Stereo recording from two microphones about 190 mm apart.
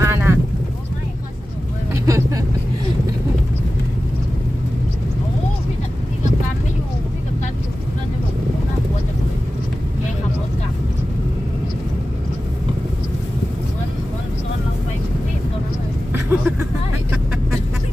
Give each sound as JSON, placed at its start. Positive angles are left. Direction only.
{"t": 0.0, "sound": "boat", "side_deg": -15}
{"t": 2.0, "sound": "vehicle", "side_deg": -15}
{"t": 16.1, "sound": "vehicle", "side_deg": -10}